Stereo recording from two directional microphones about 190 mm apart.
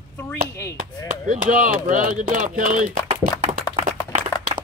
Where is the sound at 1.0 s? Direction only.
45° right (ahead or behind).